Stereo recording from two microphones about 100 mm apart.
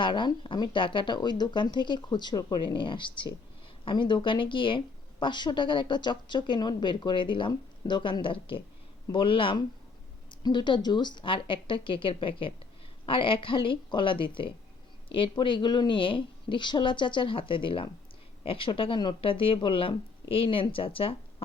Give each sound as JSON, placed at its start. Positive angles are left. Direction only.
{"t": 0.0, "sound": "speech", "side_deg": 55}